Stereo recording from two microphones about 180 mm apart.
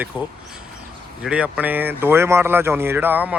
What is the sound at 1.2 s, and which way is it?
Speech, 5° right (ahead or behind).